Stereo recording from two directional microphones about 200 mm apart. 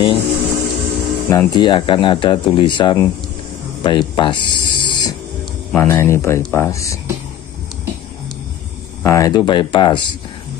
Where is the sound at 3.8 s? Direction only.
25° left (ahead or behind).